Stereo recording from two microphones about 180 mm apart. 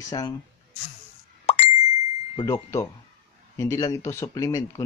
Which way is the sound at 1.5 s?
35° left (ahead or behind).